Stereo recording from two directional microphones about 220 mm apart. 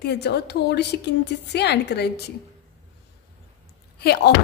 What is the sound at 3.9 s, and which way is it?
Speech, 45° left (ahead or behind).